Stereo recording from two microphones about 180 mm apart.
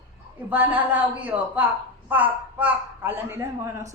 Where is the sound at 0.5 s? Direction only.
10° right (ahead or behind).